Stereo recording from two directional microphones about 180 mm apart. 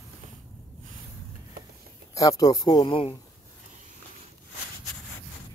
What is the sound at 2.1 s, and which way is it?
Speech, 20° left (ahead or behind).